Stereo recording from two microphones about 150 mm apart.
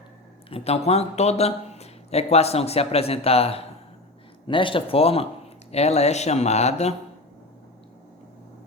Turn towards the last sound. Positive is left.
turn(degrees=45)  # may be behind; listen again after turning